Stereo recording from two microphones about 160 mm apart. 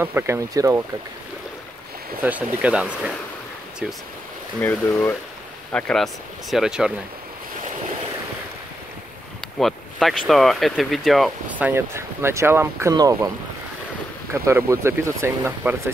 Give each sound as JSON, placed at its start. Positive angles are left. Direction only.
{"t": 0.0, "sound": "speech", "side_deg": -15}
{"t": 2.2, "sound": "speech", "side_deg": -10}
{"t": 4.6, "sound": "speech", "side_deg": 15}
{"t": 6.5, "sound": "speech", "side_deg": -5}
{"t": 9.6, "sound": "speech", "side_deg": 0}
{"t": 11.5, "sound": "speech", "side_deg": -10}
{"t": 14.3, "sound": "speech", "side_deg": -20}